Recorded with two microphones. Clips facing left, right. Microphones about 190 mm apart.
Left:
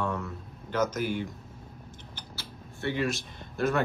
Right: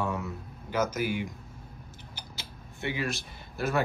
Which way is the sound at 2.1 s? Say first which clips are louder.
Even; 15° right (ahead or behind).